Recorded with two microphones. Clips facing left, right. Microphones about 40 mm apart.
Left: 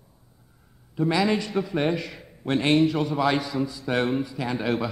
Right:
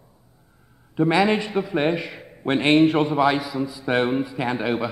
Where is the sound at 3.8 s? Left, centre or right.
Right.